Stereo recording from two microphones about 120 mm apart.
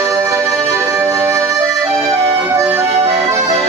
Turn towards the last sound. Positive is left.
turn(degrees=-25)  # may be behind; listen again after turning